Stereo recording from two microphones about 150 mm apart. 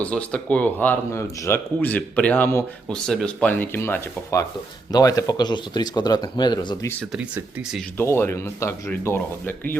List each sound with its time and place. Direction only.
0.0 s speech: 10° left (ahead or behind)
2.9 s speech: 5° left (ahead or behind); by 6.7 s 30° left (ahead or behind)
7.1 s speech: 5° right (ahead or behind)
7.9 s speech: 15° left (ahead or behind)